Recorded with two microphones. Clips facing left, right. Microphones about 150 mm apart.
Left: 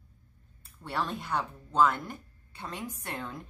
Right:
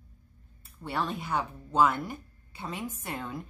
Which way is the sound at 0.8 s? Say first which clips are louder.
Right 1 dB; centre (ahead or behind).